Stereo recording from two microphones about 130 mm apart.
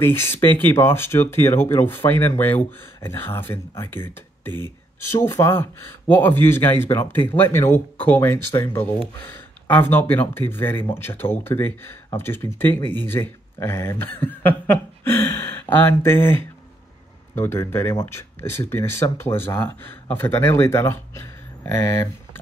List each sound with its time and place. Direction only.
0.0 s speech: 20° left (ahead or behind)
4.5 s speech: 35° right (ahead or behind)
5.1 s speech: 20° left (ahead or behind)